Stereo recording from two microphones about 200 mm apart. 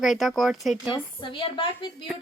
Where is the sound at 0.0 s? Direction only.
Centre (ahead or behind).